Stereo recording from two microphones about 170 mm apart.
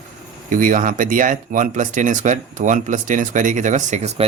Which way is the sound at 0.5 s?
50° right (ahead or behind).